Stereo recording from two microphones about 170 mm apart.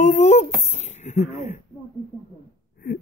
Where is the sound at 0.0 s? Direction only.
45° left (ahead or behind).